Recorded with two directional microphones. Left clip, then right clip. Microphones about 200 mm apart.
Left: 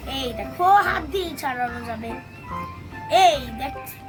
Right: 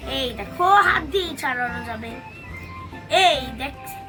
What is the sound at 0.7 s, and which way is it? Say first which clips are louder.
A child's voice: right 2 dB; 20° left (ahead or behind).